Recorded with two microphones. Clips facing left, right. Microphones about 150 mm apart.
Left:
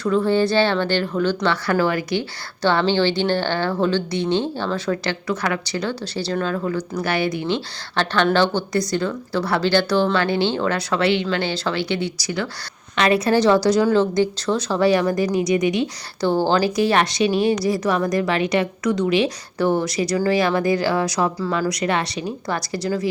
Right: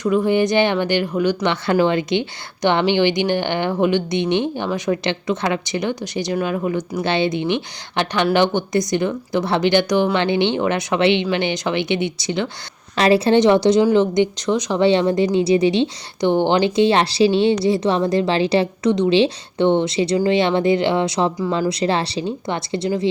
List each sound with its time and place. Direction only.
0.0 s speech: 15° right (ahead or behind)
21.7 s speech: 30° right (ahead or behind)